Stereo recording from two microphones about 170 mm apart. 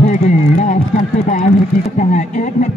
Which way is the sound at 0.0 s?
45° left (ahead or behind).